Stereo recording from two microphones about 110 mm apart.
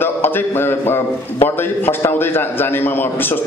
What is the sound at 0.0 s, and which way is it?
Mantra, 20° left (ahead or behind).